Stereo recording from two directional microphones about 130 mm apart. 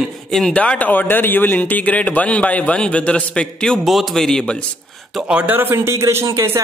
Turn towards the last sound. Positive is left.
turn(degrees=-25)  # may be behind; listen again after turning